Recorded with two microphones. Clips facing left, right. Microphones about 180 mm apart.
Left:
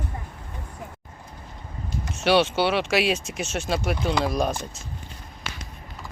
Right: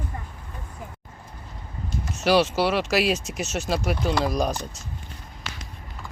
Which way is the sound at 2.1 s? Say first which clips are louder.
Even; centre (ahead or behind).